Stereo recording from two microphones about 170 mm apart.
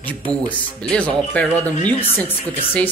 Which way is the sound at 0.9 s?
5° left (ahead or behind).